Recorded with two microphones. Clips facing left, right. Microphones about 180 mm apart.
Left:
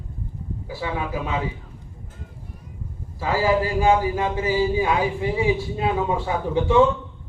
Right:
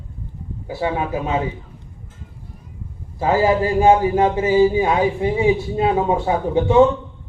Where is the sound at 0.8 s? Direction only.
35° right (ahead or behind).